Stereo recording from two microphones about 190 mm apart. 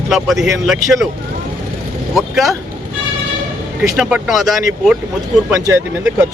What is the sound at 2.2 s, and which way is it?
Speech, centre (ahead or behind).